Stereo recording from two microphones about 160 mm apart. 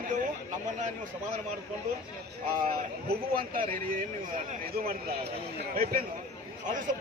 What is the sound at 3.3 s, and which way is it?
A man's voice, 60° right (ahead or behind).